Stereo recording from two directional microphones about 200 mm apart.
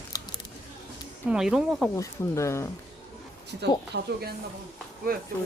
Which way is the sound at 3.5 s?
55° right (ahead or behind).